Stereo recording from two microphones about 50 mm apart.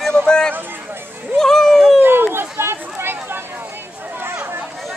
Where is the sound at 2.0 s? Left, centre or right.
Right.